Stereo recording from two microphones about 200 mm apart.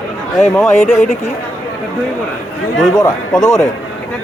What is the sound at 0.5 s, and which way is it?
Speech, centre (ahead or behind).